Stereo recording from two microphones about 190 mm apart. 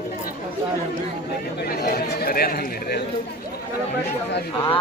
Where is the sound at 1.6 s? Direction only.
50° left (ahead or behind).